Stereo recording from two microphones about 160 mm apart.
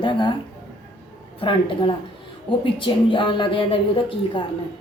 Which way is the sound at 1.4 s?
30° left (ahead or behind).